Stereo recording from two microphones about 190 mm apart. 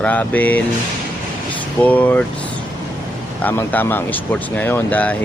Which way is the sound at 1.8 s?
10° left (ahead or behind).